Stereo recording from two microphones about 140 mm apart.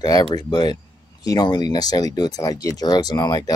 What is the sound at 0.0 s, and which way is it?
Speech, 30° left (ahead or behind).